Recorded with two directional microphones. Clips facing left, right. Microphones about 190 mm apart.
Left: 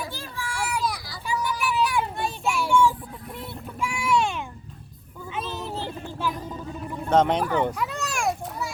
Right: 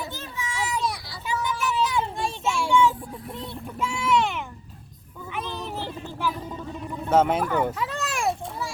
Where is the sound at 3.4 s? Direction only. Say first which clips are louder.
Even; 10° left (ahead or behind).